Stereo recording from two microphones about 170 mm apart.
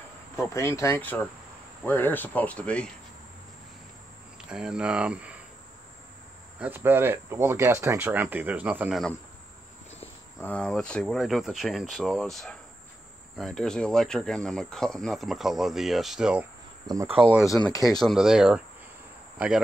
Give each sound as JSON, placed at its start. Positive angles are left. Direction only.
{"t": 0.5, "sound": "speech", "side_deg": 15}
{"t": 4.5, "sound": "speech", "side_deg": -5}
{"t": 6.6, "sound": "speech", "side_deg": -10}
{"t": 10.4, "sound": "speech", "side_deg": 5}
{"t": 16.8, "sound": "cricket", "side_deg": -20}
{"t": 17.9, "sound": "speech", "side_deg": 0}